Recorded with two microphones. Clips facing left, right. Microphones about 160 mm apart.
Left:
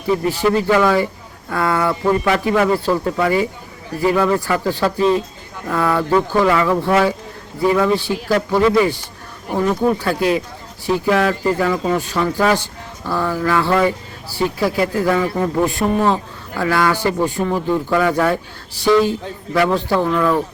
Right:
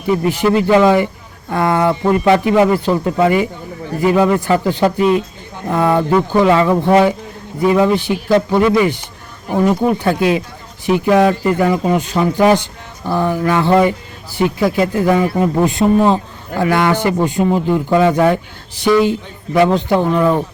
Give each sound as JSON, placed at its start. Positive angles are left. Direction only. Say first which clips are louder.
{"t": 0.3, "sound": "speech", "louder": "right 4 dB", "side_deg": -20}